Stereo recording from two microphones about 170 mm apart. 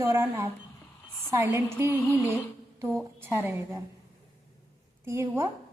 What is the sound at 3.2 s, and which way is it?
Speech, 10° right (ahead or behind).